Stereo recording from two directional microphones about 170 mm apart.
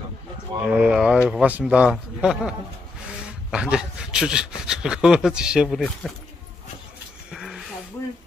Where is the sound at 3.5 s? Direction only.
5° right (ahead or behind).